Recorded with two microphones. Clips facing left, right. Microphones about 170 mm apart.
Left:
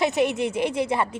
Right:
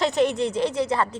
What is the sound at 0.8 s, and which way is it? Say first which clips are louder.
Speech: even; 25° left (ahead or behind).